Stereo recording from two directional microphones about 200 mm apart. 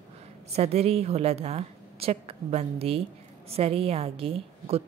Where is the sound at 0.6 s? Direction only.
30° right (ahead or behind).